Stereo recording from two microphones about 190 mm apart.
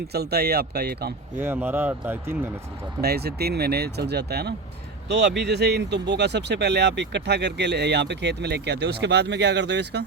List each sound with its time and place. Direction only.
0.1 s speech: 55° right (ahead or behind)
1.4 s a man's voice: 10° right (ahead or behind)
3.0 s speech: 55° right (ahead or behind)